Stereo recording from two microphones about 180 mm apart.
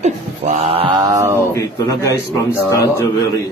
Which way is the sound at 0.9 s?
20° right (ahead or behind).